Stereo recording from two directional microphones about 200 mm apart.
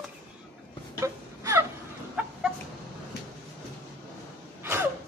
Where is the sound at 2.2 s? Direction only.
5° right (ahead or behind).